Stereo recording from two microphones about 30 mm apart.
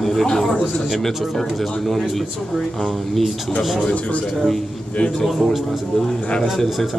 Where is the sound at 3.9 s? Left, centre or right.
Left.